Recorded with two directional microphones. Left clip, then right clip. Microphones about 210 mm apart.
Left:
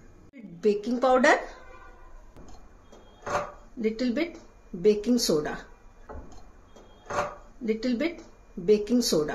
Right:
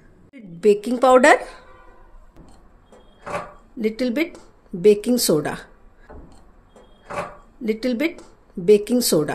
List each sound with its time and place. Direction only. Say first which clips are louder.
0.3 s a woman's voice: right 8 dB; 45° right (ahead or behind)
3.8 s speech: right 6 dB; 50° right (ahead or behind)
7.6 s speech: right 6 dB; 50° right (ahead or behind)